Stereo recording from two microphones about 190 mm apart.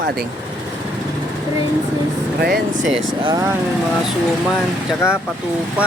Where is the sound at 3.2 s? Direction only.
20° right (ahead or behind).